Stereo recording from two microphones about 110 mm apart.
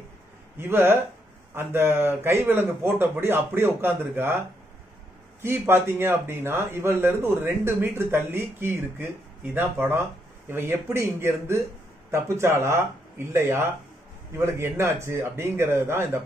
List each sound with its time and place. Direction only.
0.6 s speech: 20° right (ahead or behind)
5.4 s speech: 20° right (ahead or behind)